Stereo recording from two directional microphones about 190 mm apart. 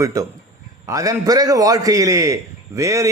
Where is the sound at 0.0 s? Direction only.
15° right (ahead or behind).